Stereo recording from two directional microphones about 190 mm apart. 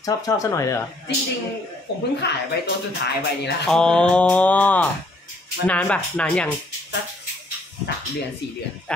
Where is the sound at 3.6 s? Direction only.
5° left (ahead or behind).